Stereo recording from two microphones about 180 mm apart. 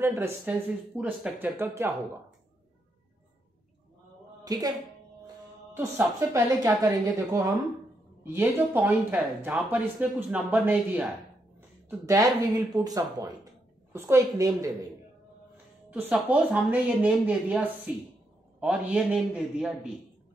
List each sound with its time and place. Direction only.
0.0 s speech: 15° right (ahead or behind)
4.5 s a woman's voice: 20° right (ahead or behind)
5.8 s a woman's voice: 15° right (ahead or behind)